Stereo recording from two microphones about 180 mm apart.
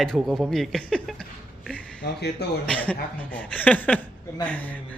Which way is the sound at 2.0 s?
65° left (ahead or behind).